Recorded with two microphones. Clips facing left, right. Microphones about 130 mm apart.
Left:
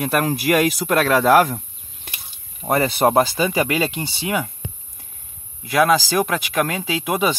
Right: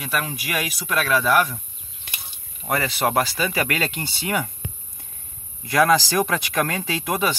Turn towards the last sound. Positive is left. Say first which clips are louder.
# left 3 dB
turn(degrees=15)  # may be behind; listen again after turning